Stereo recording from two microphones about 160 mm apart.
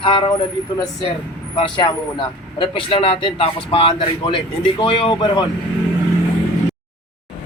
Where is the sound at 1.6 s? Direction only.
30° left (ahead or behind).